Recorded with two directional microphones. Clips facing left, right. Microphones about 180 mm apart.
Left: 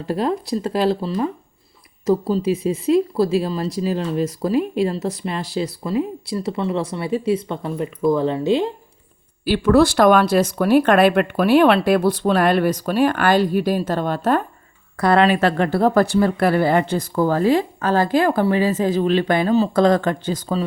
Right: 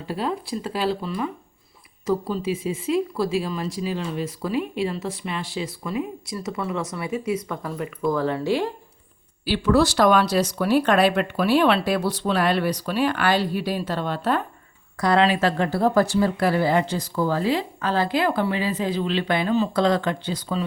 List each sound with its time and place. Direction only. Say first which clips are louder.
0.0 s speech: left 6 dB; 40° left (ahead or behind); by 8.7 s 20° left (ahead or behind)
9.5 s speech: left 5 dB; 55° left (ahead or behind)
14.9 s speech: left 4 dB; 55° left (ahead or behind)